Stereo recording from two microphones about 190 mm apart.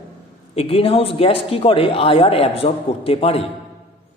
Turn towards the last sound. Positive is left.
turn(degrees=30)  # may be behind; listen again after turning